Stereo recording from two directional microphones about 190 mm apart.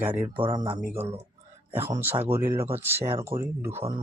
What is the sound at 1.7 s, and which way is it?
Speech, 10° right (ahead or behind).